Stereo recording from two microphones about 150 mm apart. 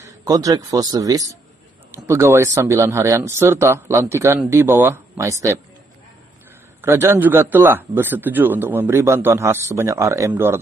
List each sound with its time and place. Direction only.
0.0 s a man's voice: 25° right (ahead or behind)
6.8 s a man's voice: 15° right (ahead or behind)